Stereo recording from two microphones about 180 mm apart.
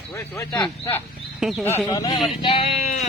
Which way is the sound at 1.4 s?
Centre (ahead or behind).